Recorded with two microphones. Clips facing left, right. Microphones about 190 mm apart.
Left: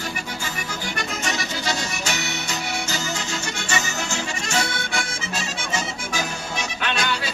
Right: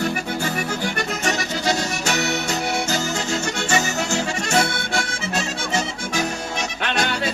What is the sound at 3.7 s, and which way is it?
Music, 40° right (ahead or behind).